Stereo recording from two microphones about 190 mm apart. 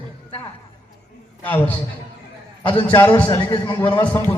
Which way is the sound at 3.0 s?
10° left (ahead or behind).